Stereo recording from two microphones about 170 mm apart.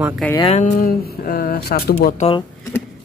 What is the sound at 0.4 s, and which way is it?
Speech, 40° left (ahead or behind).